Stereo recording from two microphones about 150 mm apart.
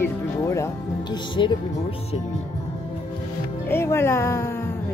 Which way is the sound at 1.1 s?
35° left (ahead or behind).